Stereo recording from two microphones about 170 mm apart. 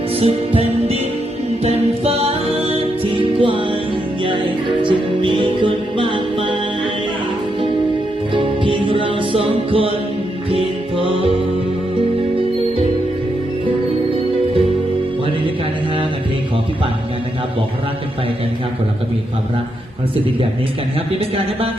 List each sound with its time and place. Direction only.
0.2 s music: 35° right (ahead or behind)
8.3 s music: 30° right (ahead or behind)